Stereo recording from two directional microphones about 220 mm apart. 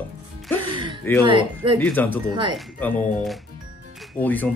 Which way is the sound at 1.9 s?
10° left (ahead or behind).